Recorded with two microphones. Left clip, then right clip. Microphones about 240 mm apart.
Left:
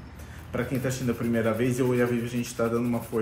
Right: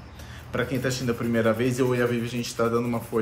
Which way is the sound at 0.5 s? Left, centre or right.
Centre.